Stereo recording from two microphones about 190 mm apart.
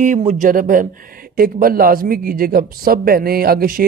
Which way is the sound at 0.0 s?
40° right (ahead or behind).